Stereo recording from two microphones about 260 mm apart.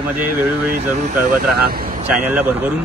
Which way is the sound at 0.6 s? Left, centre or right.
Right.